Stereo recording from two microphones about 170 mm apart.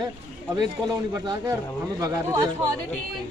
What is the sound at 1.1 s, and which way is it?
Speech, 20° right (ahead or behind).